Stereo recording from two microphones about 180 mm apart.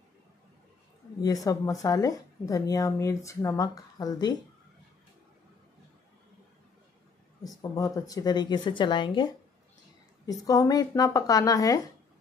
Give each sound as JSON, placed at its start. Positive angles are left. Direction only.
{"t": 1.2, "sound": "speech", "side_deg": 20}
{"t": 7.4, "sound": "speech", "side_deg": 20}